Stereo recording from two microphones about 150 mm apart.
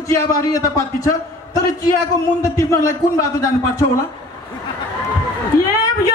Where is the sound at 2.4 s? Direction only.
20° left (ahead or behind).